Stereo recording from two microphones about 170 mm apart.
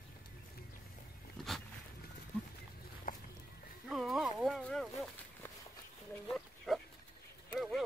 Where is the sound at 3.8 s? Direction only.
Centre (ahead or behind).